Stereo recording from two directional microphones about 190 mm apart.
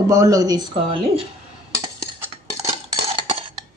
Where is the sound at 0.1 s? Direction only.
15° right (ahead or behind).